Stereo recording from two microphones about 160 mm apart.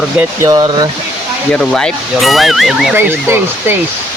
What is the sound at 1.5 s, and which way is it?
Speech, 5° left (ahead or behind).